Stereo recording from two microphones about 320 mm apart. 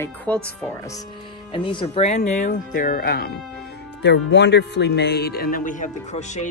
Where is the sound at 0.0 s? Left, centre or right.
Centre.